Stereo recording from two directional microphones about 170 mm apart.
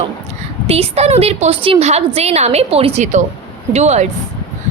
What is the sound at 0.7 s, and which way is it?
A woman's voice, 35° right (ahead or behind).